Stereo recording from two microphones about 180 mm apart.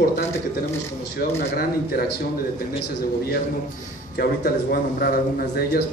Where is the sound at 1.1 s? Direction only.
60° left (ahead or behind).